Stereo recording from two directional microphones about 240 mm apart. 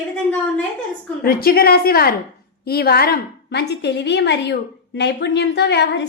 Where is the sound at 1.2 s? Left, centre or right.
Left.